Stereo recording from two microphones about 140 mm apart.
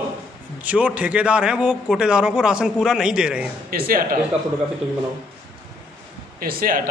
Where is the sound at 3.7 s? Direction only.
90° right.